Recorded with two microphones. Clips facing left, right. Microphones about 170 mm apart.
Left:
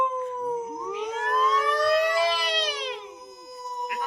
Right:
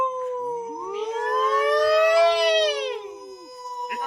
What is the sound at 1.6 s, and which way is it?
Siren, 85° right.